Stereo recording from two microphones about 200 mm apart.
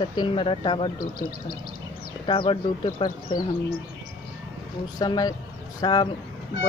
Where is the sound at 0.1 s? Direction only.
25° left (ahead or behind).